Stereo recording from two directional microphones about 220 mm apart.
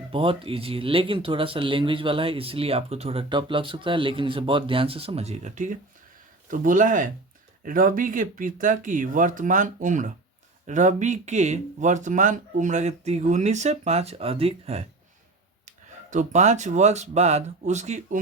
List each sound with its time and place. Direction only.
0.1 s speech: 25° right (ahead or behind)